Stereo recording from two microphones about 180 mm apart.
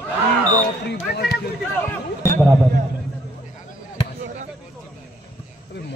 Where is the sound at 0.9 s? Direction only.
60° left (ahead or behind).